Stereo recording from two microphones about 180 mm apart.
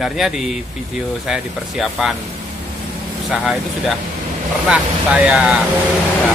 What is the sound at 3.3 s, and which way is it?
Speech, 5° right (ahead or behind).